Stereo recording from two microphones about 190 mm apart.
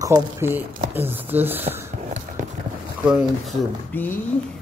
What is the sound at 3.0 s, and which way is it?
Speech, 5° right (ahead or behind).